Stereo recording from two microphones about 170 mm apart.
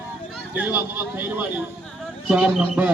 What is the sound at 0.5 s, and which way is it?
A man's voice, 10° right (ahead or behind).